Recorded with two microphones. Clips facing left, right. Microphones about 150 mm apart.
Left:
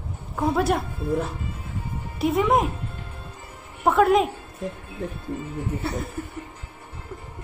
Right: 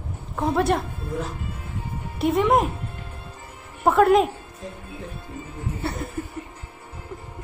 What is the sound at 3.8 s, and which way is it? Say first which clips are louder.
Speech: right 2 dB; centre (ahead or behind).